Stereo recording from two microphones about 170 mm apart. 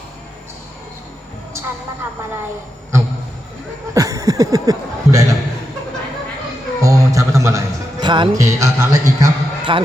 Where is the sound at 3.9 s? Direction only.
20° right (ahead or behind).